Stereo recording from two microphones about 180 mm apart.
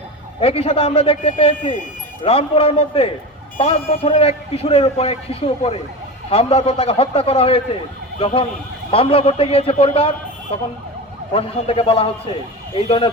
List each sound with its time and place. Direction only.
0.3 s speech: 35° left (ahead or behind)